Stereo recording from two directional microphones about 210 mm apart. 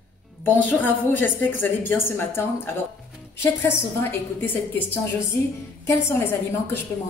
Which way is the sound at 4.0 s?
10° left (ahead or behind).